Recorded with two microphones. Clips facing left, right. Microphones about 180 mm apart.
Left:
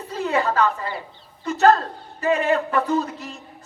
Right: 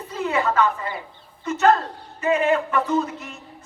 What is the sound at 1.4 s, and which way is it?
A man's voice, 35° left (ahead or behind).